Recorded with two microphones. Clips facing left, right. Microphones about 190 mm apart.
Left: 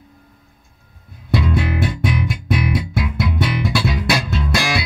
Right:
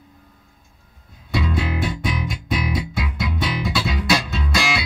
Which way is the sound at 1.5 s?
55° left (ahead or behind).